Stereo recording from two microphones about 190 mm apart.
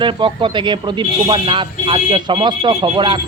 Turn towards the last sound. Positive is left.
turn(degrees=-25)  # may be behind; listen again after turning